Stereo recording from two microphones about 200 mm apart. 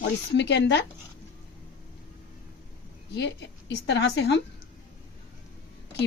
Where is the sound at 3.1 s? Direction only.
60° left (ahead or behind).